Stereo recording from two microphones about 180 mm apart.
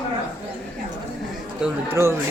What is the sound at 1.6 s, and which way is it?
Speech, 15° right (ahead or behind).